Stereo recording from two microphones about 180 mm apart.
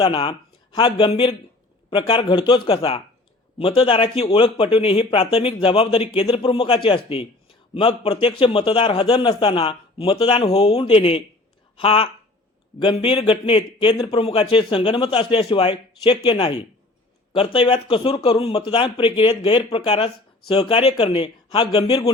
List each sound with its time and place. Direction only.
0.0 s a man's voice: 25° left (ahead or behind)